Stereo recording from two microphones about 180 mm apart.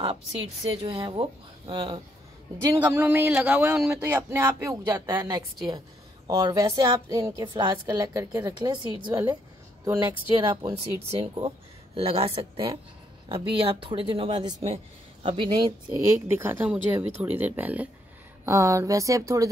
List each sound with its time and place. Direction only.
0.7 s speech: 25° right (ahead or behind)
2.6 s a woman's voice: 15° right (ahead or behind)